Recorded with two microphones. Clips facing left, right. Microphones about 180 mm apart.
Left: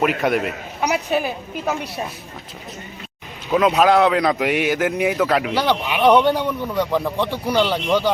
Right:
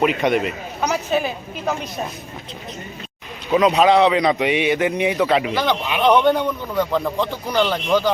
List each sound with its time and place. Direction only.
0.0 s a man's voice: centre (ahead or behind)
3.5 s a man's voice: centre (ahead or behind)